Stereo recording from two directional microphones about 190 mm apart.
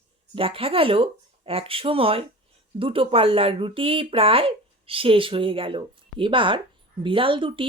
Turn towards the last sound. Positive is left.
turn(degrees=-25)  # may be behind; listen again after turning